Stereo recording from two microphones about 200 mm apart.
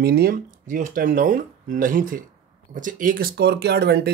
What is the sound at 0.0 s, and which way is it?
Speech, 50° right (ahead or behind).